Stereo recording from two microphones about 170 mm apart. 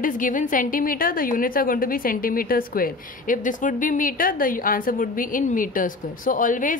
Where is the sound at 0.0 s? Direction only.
50° left (ahead or behind).